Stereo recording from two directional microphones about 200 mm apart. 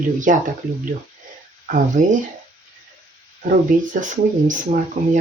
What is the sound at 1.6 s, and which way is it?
Speech, 40° right (ahead or behind).